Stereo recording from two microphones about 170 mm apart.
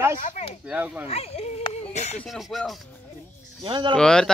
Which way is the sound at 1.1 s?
35° left (ahead or behind).